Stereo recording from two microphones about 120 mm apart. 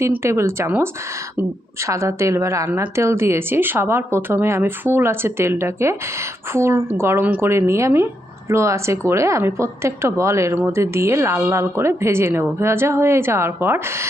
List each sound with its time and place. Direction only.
0.0 s a woman's voice: 20° right (ahead or behind)